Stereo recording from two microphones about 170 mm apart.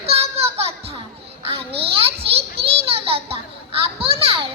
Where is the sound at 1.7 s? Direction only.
35° right (ahead or behind).